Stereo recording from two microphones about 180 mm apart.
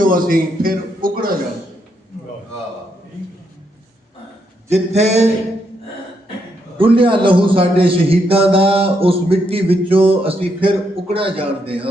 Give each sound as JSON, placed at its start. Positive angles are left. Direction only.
{"t": 0.0, "sound": "a man's voice", "side_deg": -50}
{"t": 4.7, "sound": "a man's voice", "side_deg": -40}
{"t": 6.7, "sound": "a man's voice", "side_deg": -30}